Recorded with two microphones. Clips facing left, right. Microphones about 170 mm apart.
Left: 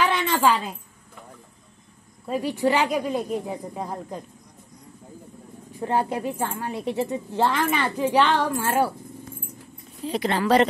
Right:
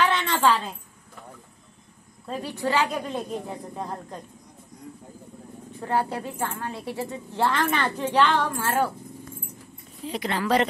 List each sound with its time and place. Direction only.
0.0 s a woman's voice: 10° left (ahead or behind)
2.2 s a woman's voice: 10° left (ahead or behind)
5.8 s a woman's voice: 15° left (ahead or behind)
10.0 s speech: 30° left (ahead or behind)